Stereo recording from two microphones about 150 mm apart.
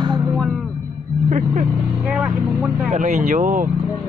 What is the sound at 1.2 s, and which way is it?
Speech, 60° right (ahead or behind).